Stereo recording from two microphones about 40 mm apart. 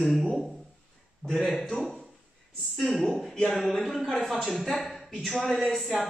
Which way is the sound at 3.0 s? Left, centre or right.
Centre.